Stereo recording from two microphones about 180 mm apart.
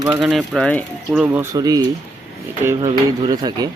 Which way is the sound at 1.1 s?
10° right (ahead or behind).